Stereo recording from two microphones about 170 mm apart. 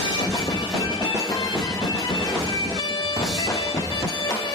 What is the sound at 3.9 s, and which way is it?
Bagpipes, 30° left (ahead or behind).